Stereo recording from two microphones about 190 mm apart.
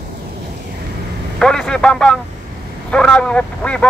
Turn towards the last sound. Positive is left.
turn(degrees=5)  # may be behind; listen again after turning